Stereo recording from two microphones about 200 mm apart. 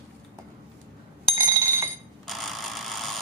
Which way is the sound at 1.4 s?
10° right (ahead or behind).